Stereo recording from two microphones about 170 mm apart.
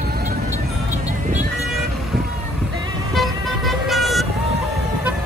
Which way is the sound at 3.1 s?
Centre (ahead or behind).